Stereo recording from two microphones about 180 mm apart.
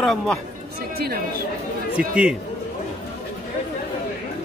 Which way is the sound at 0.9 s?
60° right (ahead or behind).